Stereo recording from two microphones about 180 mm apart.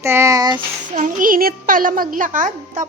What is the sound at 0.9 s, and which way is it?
A woman's voice, 45° right (ahead or behind).